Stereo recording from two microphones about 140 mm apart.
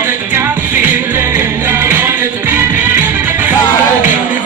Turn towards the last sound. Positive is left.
turn(degrees=-15)  # may be behind; listen again after turning